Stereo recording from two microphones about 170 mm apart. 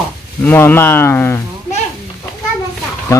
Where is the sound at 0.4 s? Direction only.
10° left (ahead or behind).